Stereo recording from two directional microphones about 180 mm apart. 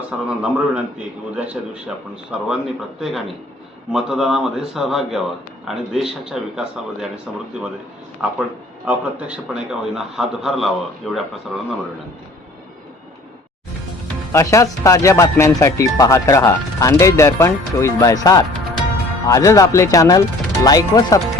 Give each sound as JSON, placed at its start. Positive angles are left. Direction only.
{"t": 0.3, "sound": "a man's voice", "side_deg": -5}
{"t": 8.9, "sound": "a man's voice", "side_deg": -5}
{"t": 14.3, "sound": "speech", "side_deg": 15}